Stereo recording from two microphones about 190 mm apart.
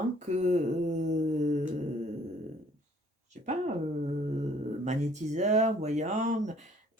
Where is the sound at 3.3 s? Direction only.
35° right (ahead or behind).